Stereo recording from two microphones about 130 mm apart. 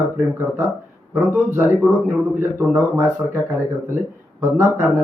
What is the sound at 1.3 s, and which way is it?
Speech, 15° right (ahead or behind).